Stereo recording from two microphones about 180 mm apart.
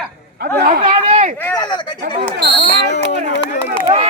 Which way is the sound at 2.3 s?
60° right (ahead or behind).